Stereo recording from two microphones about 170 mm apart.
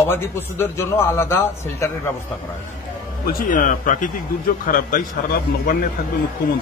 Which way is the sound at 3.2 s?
55° left (ahead or behind).